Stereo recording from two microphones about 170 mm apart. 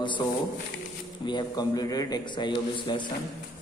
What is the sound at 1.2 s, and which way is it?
A man's voice, 25° left (ahead or behind).